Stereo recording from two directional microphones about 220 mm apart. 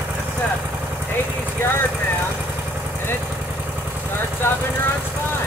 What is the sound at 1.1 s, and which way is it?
Vehicle, 10° left (ahead or behind).